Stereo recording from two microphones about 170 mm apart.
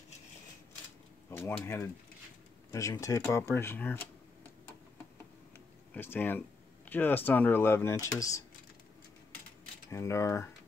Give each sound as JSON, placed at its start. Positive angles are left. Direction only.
{"t": 1.3, "sound": "speech", "side_deg": 15}
{"t": 5.9, "sound": "speech", "side_deg": 10}
{"t": 9.8, "sound": "speech", "side_deg": 15}